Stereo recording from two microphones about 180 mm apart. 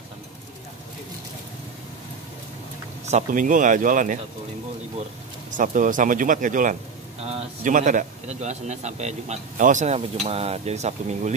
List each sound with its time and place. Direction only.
3.1 s speech: 45° right (ahead or behind)
5.5 s a man's voice: 45° right (ahead or behind)